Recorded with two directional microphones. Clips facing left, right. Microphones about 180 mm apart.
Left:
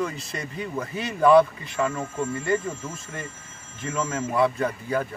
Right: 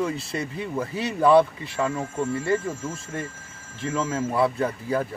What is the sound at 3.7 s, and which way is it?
Speech, 30° right (ahead or behind).